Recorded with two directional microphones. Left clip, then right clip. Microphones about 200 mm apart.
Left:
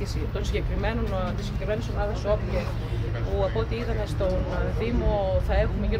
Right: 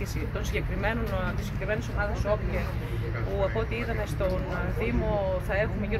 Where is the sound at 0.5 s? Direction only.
5° left (ahead or behind).